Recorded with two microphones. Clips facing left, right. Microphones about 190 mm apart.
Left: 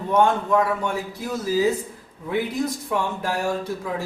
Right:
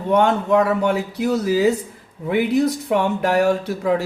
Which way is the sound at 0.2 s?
70° right (ahead or behind).